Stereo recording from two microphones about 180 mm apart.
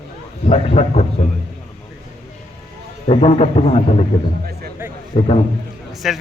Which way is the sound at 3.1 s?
35° left (ahead or behind).